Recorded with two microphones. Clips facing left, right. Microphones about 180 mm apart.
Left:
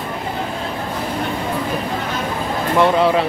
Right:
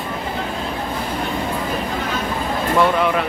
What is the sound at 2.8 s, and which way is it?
Speech, 30° left (ahead or behind).